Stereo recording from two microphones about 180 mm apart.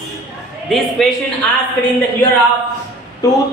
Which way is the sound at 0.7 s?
Centre (ahead or behind).